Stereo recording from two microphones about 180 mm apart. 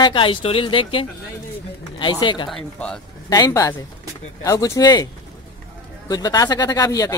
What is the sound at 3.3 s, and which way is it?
Speech, 20° left (ahead or behind).